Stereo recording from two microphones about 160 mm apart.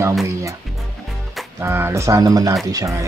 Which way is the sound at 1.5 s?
15° right (ahead or behind).